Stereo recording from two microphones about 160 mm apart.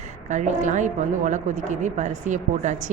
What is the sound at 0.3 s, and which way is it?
Speech, 50° right (ahead or behind).